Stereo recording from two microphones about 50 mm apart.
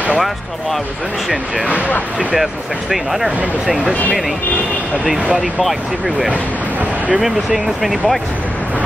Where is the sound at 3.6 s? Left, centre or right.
Centre.